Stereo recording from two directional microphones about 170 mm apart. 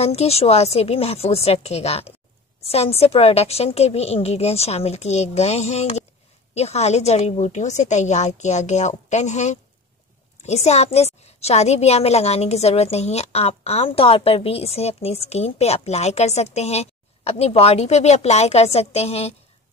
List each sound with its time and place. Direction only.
0.0 s a woman's voice: 40° left (ahead or behind)